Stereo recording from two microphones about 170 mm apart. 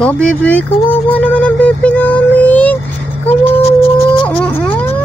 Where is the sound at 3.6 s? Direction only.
35° left (ahead or behind).